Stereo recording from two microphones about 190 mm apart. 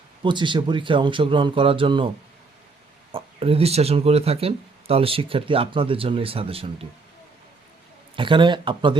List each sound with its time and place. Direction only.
0.2 s speech: 25° right (ahead or behind)
3.1 s speech: 30° right (ahead or behind)
8.1 s speech: 25° right (ahead or behind)